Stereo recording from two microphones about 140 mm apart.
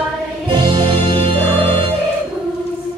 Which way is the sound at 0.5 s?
35° right (ahead or behind).